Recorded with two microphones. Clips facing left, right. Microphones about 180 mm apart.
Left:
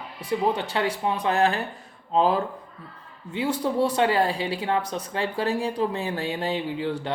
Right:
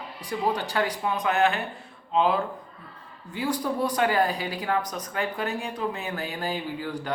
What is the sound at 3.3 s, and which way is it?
Speech, 25° left (ahead or behind).